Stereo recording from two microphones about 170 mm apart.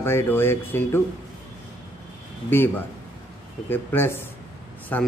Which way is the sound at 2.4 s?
10° left (ahead or behind).